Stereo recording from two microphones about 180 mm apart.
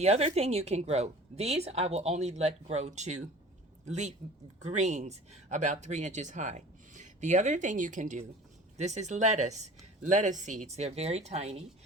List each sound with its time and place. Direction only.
0.0 s speech: 35° right (ahead or behind)